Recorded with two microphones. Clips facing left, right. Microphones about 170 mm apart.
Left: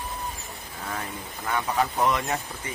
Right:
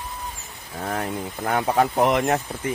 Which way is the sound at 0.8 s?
55° right (ahead or behind).